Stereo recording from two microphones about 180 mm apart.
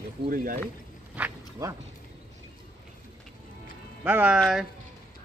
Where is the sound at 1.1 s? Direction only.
10° right (ahead or behind).